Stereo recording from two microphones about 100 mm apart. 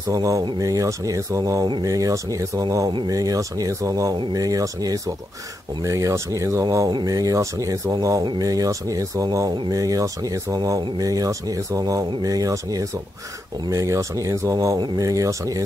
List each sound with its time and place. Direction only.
0.1 s speech: 35° right (ahead or behind)
6.9 s speech: 45° right (ahead or behind)